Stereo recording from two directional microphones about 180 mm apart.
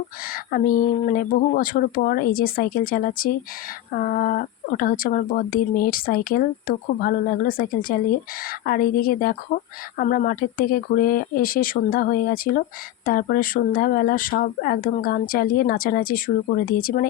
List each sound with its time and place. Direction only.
0.3 s speech: 55° left (ahead or behind)